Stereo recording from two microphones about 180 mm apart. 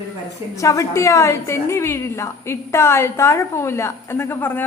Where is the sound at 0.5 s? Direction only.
15° left (ahead or behind).